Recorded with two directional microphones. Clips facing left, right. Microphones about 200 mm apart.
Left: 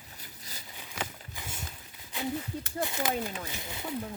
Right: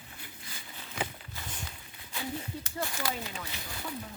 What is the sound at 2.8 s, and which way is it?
Speech, 20° left (ahead or behind).